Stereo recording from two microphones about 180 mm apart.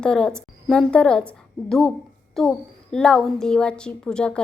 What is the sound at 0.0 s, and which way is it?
A child's voice, 5° left (ahead or behind).